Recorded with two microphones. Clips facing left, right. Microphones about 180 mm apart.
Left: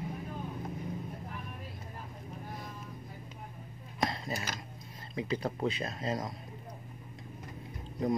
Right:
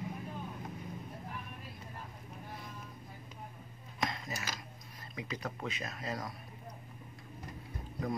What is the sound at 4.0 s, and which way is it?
Dishes, 35° left (ahead or behind).